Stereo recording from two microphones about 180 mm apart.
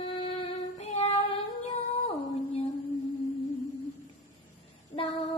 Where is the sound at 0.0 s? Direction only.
30° left (ahead or behind).